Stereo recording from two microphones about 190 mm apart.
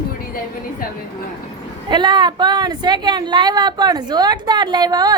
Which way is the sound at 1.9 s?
25° right (ahead or behind).